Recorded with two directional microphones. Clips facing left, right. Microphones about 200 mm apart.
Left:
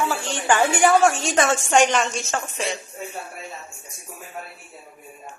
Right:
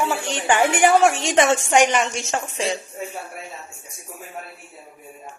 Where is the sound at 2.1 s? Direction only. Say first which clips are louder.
Right 1 dB; 25° right (ahead or behind).